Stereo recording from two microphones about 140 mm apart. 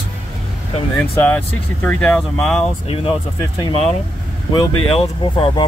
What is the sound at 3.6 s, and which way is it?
Speech, 40° left (ahead or behind).